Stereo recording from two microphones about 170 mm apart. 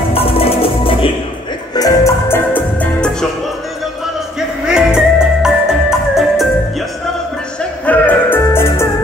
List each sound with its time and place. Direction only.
0.1 s music: 35° left (ahead or behind)
1.8 s music: 20° left (ahead or behind)
4.6 s music: 5° right (ahead or behind)
7.8 s music: 10° left (ahead or behind)